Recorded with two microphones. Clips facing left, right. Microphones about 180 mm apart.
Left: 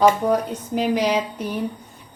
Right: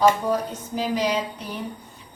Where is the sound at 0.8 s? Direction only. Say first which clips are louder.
Left 4 dB; 60° left (ahead or behind).